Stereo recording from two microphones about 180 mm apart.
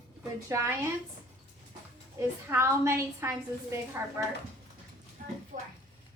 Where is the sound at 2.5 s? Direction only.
15° right (ahead or behind).